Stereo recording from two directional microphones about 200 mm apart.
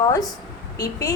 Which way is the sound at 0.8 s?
20° left (ahead or behind).